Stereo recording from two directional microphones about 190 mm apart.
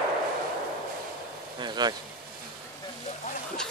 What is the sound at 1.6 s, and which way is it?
Speech, 20° right (ahead or behind).